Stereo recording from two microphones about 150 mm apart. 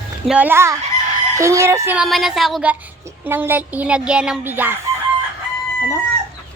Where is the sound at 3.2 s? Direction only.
15° right (ahead or behind).